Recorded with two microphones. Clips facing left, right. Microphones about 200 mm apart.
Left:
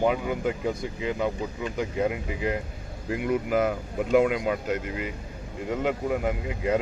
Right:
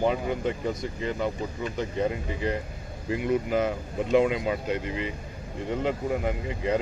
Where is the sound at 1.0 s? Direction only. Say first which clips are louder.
Left 2 dB; 10° left (ahead or behind).